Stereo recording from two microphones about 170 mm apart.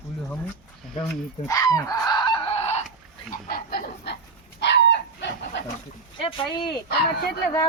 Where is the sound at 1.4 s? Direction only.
20° left (ahead or behind); by 2.8 s 35° left (ahead or behind).